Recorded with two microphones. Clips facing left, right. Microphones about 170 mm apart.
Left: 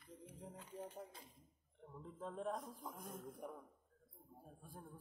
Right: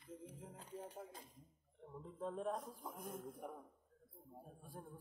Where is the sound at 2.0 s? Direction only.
Centre (ahead or behind).